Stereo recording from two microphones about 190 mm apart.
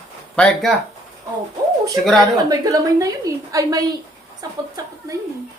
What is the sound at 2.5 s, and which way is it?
A woman's voice, 20° right (ahead or behind).